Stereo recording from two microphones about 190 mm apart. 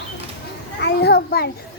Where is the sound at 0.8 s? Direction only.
60° left (ahead or behind).